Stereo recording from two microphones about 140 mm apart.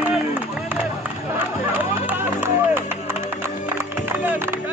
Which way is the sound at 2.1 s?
15° right (ahead or behind).